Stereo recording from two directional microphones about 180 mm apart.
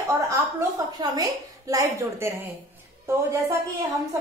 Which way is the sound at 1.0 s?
20° right (ahead or behind).